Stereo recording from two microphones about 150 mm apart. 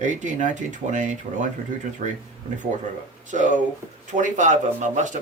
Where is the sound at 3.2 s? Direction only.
55° right (ahead or behind).